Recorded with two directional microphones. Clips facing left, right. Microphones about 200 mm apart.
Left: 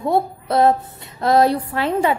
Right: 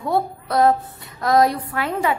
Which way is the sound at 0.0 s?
25° left (ahead or behind).